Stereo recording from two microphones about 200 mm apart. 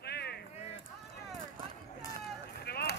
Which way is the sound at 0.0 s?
55° left (ahead or behind).